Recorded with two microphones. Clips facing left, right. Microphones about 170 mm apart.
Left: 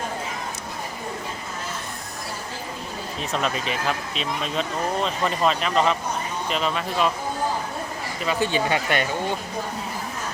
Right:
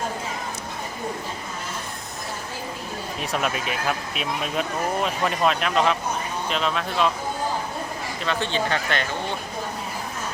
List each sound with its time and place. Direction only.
3.2 s speech: 5° right (ahead or behind)
8.2 s speech: 5° left (ahead or behind)